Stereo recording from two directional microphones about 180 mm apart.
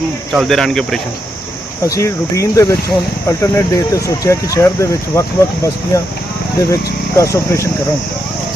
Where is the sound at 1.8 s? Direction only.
15° left (ahead or behind).